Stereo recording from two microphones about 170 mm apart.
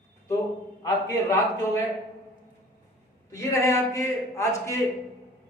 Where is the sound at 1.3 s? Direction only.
15° left (ahead or behind).